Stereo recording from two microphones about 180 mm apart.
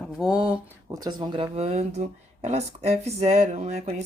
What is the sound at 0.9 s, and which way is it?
A woman's voice, 20° right (ahead or behind).